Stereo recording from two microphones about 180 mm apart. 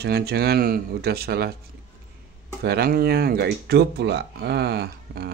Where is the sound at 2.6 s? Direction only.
60° right (ahead or behind).